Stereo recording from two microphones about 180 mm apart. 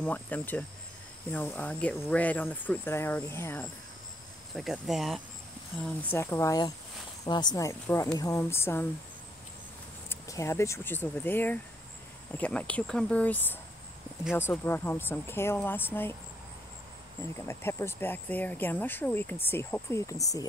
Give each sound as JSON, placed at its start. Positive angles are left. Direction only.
{"t": 0.0, "sound": "speech", "side_deg": 10}
{"t": 4.6, "sound": "speech", "side_deg": 0}
{"t": 10.0, "sound": "speech", "side_deg": 15}
{"t": 17.5, "sound": "speech", "side_deg": 15}